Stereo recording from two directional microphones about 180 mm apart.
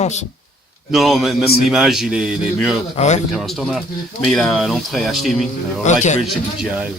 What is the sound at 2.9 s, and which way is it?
Speech, 40° left (ahead or behind).